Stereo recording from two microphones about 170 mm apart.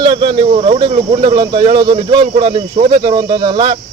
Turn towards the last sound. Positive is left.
turn(degrees=-25)  # may be behind; listen again after turning